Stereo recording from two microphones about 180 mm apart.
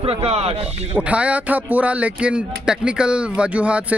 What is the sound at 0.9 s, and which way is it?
Speech, 5° right (ahead or behind).